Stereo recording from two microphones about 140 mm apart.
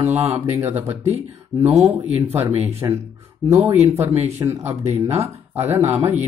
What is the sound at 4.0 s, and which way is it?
Speech, 15° right (ahead or behind).